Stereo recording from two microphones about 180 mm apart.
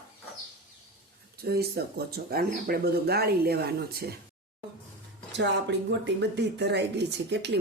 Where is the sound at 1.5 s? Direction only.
60° right (ahead or behind).